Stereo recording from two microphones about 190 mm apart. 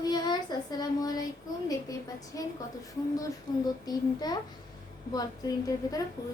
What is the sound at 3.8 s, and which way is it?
Speech, 20° left (ahead or behind).